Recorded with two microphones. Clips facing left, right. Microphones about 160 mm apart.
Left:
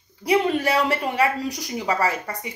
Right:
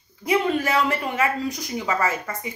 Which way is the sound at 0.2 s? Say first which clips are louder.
Left 1 dB; 35° left (ahead or behind).